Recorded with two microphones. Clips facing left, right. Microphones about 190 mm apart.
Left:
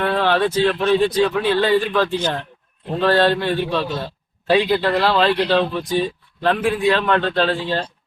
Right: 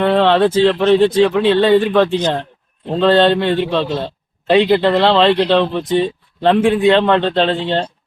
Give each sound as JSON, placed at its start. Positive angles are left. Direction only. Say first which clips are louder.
{"t": 0.0, "sound": "speech", "louder": "right 6 dB", "side_deg": -25}